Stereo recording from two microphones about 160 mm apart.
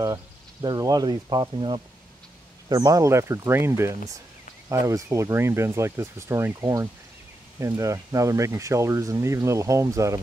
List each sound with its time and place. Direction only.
0.0 s speech: 25° right (ahead or behind)